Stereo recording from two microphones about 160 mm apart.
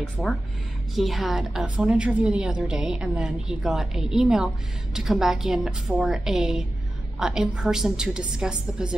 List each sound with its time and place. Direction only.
0.2 s a woman's voice: centre (ahead or behind)